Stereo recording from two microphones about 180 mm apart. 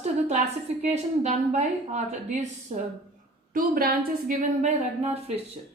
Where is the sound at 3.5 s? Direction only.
55° right (ahead or behind); by 5.4 s 35° right (ahead or behind).